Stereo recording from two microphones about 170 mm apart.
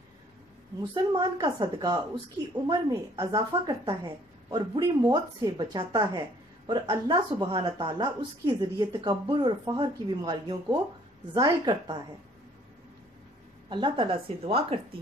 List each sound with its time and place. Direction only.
1.1 s a woman's voice: 25° right (ahead or behind)
13.7 s a woman's voice: 30° right (ahead or behind)